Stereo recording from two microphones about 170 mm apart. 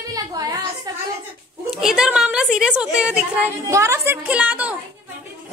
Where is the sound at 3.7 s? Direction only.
15° right (ahead or behind).